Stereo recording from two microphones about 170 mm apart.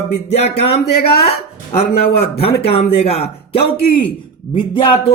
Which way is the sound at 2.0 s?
65° left (ahead or behind).